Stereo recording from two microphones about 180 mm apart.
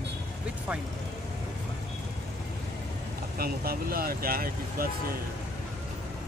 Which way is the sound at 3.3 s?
55° right (ahead or behind).